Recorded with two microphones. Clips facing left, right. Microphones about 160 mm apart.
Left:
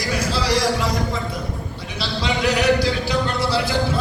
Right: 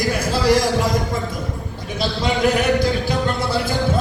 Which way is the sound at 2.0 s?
50° right (ahead or behind).